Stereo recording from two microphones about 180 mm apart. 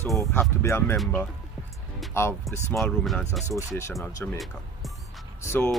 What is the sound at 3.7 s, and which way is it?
Speech, 15° left (ahead or behind).